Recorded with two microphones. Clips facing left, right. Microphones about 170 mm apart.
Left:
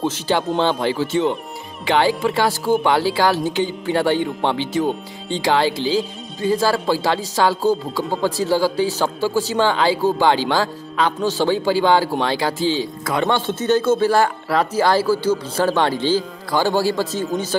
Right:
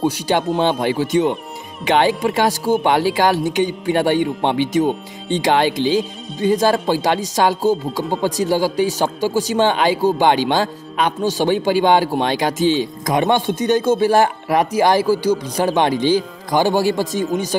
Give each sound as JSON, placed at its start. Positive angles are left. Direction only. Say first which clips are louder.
{"t": 0.0, "sound": "speech", "louder": "right 2 dB", "side_deg": -15}